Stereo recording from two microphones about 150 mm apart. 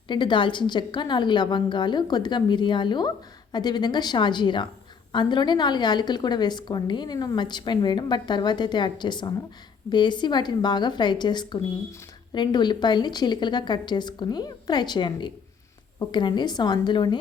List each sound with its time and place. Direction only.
0.1 s a woman's voice: 30° left (ahead or behind)